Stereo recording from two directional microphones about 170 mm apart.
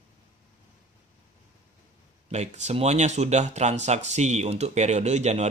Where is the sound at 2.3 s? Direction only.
40° right (ahead or behind).